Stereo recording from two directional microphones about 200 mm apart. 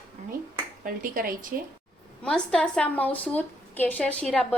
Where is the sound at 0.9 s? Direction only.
45° right (ahead or behind).